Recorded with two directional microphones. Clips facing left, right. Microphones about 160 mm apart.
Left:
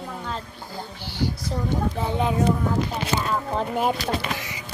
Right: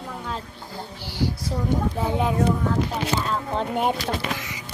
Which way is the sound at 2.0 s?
5° right (ahead or behind).